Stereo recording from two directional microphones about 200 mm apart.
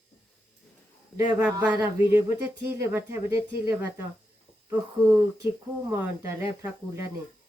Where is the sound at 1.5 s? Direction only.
15° right (ahead or behind).